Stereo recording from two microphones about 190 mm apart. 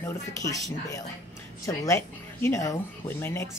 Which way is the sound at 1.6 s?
15° left (ahead or behind).